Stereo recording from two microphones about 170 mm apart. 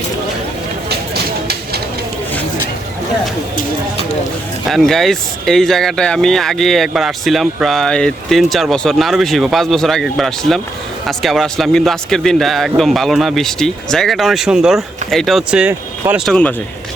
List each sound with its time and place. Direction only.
0.9 s vehicle: 70° right (ahead or behind)
4.7 s speech: centre (ahead or behind)
16.3 s speech: 10° left (ahead or behind)